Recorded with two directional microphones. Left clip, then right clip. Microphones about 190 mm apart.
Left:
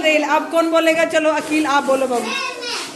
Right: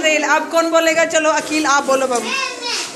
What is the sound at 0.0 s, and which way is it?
A man's voice, 20° left (ahead or behind).